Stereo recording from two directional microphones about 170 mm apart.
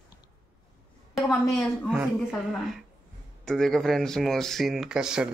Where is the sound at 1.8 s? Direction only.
5° right (ahead or behind).